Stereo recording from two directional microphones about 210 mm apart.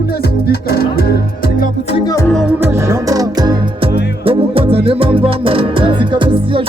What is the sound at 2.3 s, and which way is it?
Music, centre (ahead or behind).